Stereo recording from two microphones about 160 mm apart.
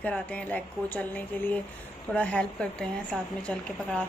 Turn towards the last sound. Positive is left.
turn(degrees=5)  # may be behind; listen again after turning